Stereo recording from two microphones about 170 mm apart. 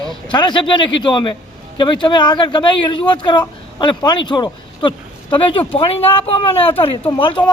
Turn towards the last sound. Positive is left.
turn(degrees=30)  # may be behind; listen again after turning